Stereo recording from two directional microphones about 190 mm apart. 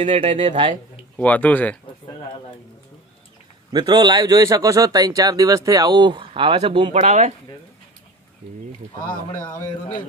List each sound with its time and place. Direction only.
0.0 s a man's voice: 35° right (ahead or behind)
1.1 s speech: 10° left (ahead or behind)
3.7 s a man's voice: 20° right (ahead or behind); by 7.3 s 35° right (ahead or behind)
9.4 s a man's voice: 25° left (ahead or behind)